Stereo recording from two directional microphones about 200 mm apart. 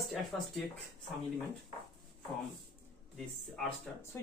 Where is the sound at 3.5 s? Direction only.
10° left (ahead or behind).